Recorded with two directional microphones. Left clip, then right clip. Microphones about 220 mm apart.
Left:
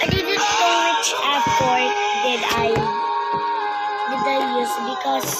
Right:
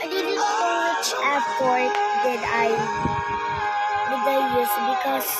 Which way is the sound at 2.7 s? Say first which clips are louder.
Left 3 dB; 35° right (ahead or behind).